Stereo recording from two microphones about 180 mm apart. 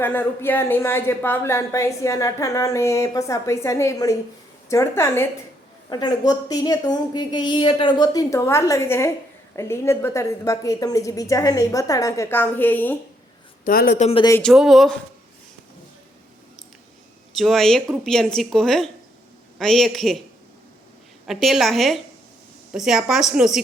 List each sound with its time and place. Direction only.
0.0 s a woman's voice: 10° left (ahead or behind)
13.7 s speech: 55° left (ahead or behind)
13.9 s speech: 40° left (ahead or behind)
14.5 s a woman's voice: centre (ahead or behind)
17.3 s a woman's voice: centre (ahead or behind)
21.2 s a woman's voice: centre (ahead or behind)